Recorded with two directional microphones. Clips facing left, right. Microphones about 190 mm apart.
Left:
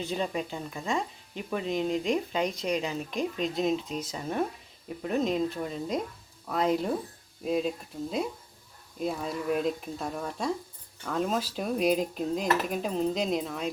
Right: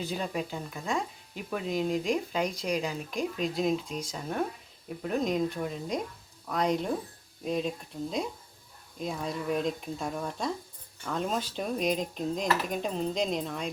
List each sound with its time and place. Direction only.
0.0 s speech: centre (ahead or behind)
9.0 s speech: 5° left (ahead or behind)